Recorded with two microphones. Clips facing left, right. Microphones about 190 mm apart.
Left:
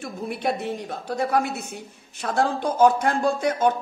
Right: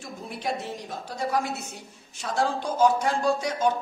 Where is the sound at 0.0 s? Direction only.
60° left (ahead or behind).